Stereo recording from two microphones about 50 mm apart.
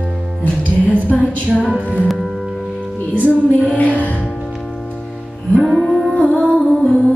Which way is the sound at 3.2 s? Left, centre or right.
Left.